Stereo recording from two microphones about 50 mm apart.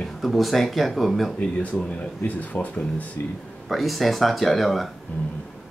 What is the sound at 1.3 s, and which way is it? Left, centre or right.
Speech, left.